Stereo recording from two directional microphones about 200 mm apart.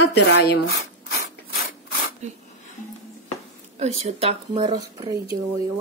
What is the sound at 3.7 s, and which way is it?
Speech, 35° right (ahead or behind).